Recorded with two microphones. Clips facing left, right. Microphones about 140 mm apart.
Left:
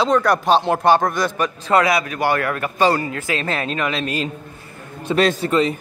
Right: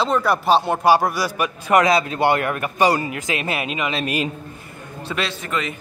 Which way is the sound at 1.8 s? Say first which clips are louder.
Right 2 dB; 25° right (ahead or behind).